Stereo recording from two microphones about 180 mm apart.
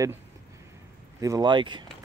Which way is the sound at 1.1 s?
20° right (ahead or behind).